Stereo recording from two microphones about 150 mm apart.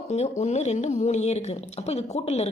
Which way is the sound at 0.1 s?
50° left (ahead or behind).